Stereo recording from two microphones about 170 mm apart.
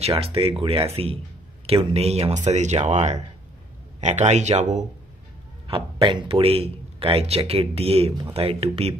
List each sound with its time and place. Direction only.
0.0 s speech: 35° right (ahead or behind)
5.7 s speech: 30° right (ahead or behind)